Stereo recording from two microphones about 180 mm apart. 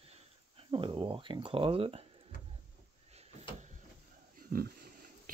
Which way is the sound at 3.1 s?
35° right (ahead or behind).